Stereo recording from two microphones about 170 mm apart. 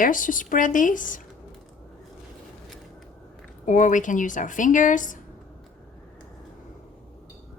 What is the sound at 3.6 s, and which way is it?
Speech, 50° left (ahead or behind).